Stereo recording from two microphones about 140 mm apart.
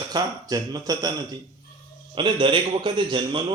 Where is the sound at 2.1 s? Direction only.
35° right (ahead or behind).